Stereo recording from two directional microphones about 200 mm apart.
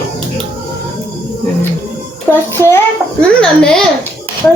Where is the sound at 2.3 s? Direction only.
10° left (ahead or behind).